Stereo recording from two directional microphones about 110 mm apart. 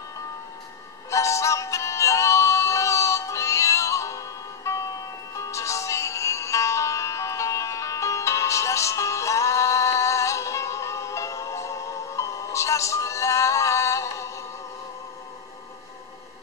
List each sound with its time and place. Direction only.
1.1 s synthetic singing: 25° left (ahead or behind)
5.3 s music: 30° left (ahead or behind)